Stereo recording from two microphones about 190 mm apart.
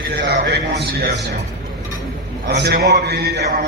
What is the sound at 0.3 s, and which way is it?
Speech, 60° right (ahead or behind).